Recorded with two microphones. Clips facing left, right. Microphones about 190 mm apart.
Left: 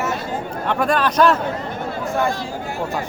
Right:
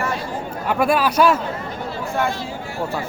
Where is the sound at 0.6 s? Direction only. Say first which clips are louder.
Right 1 dB; 10° right (ahead or behind).